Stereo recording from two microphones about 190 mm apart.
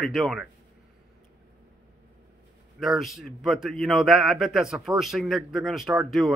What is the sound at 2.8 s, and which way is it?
Speech, centre (ahead or behind).